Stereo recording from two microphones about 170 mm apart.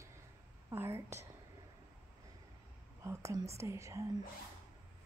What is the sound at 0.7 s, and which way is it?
Speech, 15° right (ahead or behind).